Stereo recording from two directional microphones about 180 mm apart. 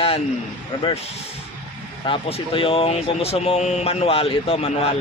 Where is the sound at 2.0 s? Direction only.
30° left (ahead or behind).